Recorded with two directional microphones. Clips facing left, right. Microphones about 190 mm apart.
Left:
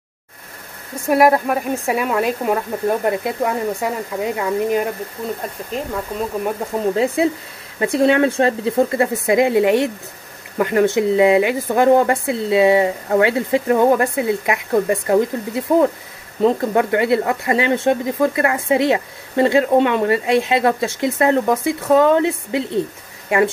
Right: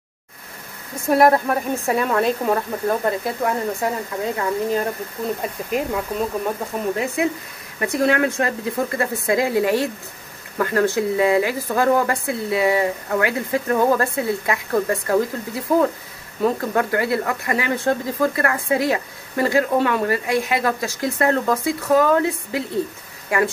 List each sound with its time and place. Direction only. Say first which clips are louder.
1.1 s speech: left 1 dB; 10° left (ahead or behind)
5.4 s speech: right 2 dB; 10° right (ahead or behind)
7.8 s speech: left 4 dB; 25° left (ahead or behind)